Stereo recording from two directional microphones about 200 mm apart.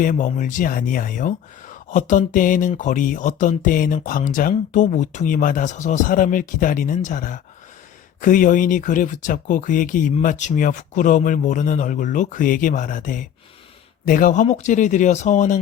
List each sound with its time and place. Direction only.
0.0 s speech: 40° left (ahead or behind)